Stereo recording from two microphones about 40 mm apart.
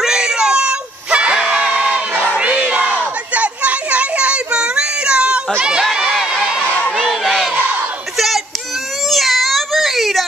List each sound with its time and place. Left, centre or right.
0.0 s a sound: centre
1.4 s crowd: centre
1.7 s crowd: right
3.3 s a sound: right
5.9 s crowd: centre
7.0 s crowd: centre
9.1 s baby cry: centre